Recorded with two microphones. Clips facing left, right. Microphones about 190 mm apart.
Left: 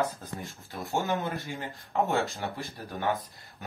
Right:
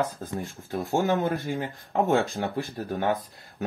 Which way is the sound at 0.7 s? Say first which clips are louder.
Right 6 dB; 45° right (ahead or behind).